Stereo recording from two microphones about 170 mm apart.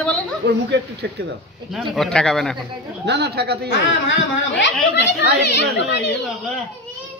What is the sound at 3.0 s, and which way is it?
Speech, 80° right.